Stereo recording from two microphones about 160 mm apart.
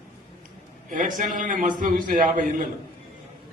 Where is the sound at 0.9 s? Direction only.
55° right (ahead or behind).